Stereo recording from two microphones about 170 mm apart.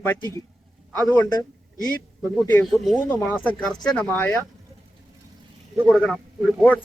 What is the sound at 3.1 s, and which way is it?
A man's voice, 10° left (ahead or behind).